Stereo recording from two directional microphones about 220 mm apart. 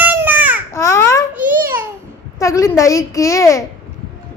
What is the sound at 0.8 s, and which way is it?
Babbling, 15° left (ahead or behind).